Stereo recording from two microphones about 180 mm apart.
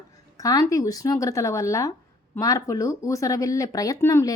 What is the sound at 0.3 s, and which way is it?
A woman's voice, 20° left (ahead or behind).